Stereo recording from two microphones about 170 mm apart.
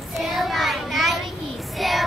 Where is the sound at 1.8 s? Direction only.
Centre (ahead or behind).